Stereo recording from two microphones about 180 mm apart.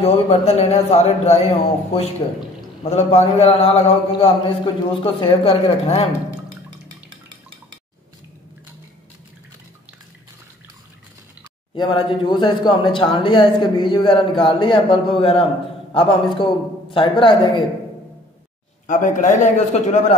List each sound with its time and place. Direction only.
0.0 s a man's voice: 35° left (ahead or behind)
11.7 s a man's voice: 25° left (ahead or behind)
18.9 s a man's voice: 45° left (ahead or behind)